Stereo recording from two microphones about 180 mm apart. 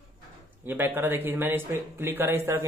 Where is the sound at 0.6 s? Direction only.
10° right (ahead or behind).